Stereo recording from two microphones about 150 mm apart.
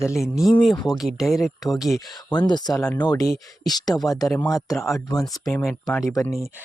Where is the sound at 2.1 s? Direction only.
30° left (ahead or behind).